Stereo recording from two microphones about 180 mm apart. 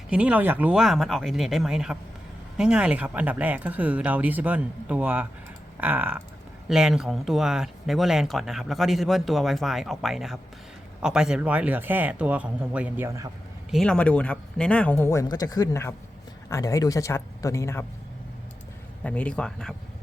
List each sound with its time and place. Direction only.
0.1 s speech: 5° right (ahead or behind)
13.7 s speech: centre (ahead or behind)
19.0 s speech: 5° left (ahead or behind)